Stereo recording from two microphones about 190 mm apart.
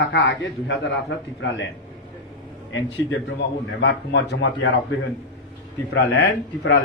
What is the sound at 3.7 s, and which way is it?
Speech, 65° left (ahead or behind).